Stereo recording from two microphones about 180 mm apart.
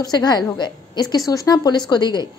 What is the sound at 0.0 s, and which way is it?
A woman's voice, 20° left (ahead or behind).